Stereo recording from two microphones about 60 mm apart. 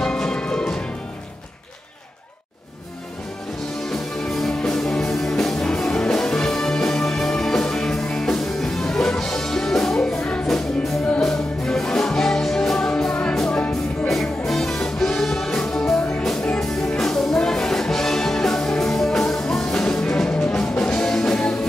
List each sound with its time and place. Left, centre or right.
0.0 s music: centre
3.9 s music: centre
9.9 s music: centre
10.4 s music: centre
12.9 s music: centre
14.0 s music: centre